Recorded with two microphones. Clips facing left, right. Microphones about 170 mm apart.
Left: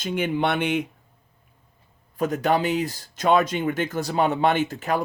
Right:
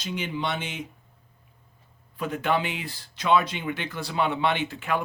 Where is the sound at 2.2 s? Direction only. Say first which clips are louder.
Left 4 dB; 40° left (ahead or behind).